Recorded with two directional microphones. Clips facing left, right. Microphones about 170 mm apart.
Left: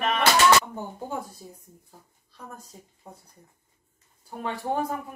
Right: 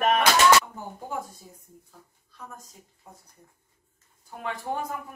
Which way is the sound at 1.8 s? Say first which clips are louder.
Even; 35° left (ahead or behind).